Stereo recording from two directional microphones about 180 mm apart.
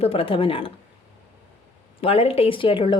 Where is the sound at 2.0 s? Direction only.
35° left (ahead or behind).